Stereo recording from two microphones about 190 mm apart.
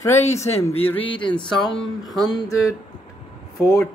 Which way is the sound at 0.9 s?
25° left (ahead or behind).